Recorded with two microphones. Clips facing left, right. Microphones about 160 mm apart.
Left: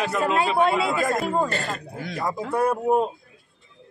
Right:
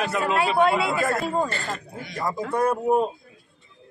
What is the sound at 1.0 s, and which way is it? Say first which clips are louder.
A man's voice: left 1 dB; 15° left (ahead or behind).